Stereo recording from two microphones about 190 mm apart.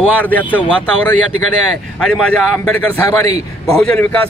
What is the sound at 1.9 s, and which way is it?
Speech, 5° left (ahead or behind).